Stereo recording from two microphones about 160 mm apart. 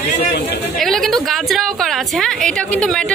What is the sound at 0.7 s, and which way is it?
A woman's voice, centre (ahead or behind).